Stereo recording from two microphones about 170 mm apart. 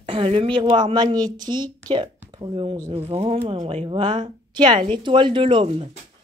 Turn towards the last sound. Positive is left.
turn(degrees=-35)  # may be behind; listen again after turning